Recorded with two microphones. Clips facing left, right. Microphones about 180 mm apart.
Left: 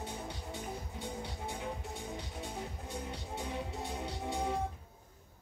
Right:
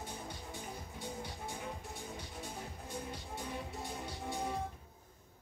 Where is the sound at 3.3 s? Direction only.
70° left (ahead or behind).